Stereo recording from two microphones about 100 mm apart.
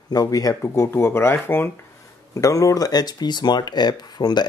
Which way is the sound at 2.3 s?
35° left (ahead or behind).